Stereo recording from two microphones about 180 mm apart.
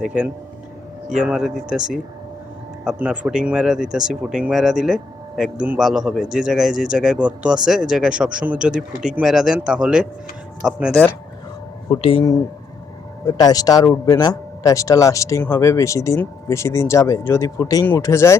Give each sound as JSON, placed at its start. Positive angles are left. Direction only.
{"t": 0.0, "sound": "a man's voice", "side_deg": -5}
{"t": 2.8, "sound": "a man's voice", "side_deg": -5}
{"t": 11.9, "sound": "speech", "side_deg": 30}
{"t": 13.2, "sound": "a man's voice", "side_deg": 20}